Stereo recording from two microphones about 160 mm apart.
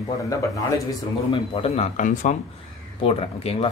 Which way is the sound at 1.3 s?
35° left (ahead or behind).